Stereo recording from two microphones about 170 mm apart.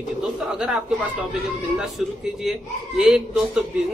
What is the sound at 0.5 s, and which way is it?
Speech, 5° right (ahead or behind).